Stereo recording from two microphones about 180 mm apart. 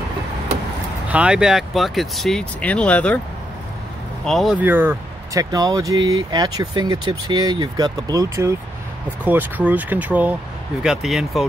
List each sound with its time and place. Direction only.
1.0 s speech: 5° right (ahead or behind)
4.2 s speech: centre (ahead or behind)